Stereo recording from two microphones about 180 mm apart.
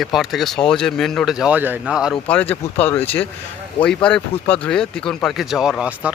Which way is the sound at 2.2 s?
5° left (ahead or behind).